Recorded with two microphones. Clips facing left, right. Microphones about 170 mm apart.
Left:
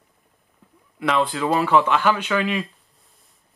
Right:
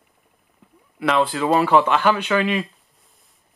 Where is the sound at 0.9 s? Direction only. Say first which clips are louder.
Right 2 dB; 5° right (ahead or behind).